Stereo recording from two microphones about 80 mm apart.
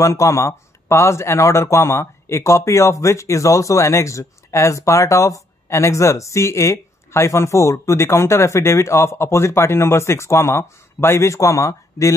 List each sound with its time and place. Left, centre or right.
0.0 s speech: left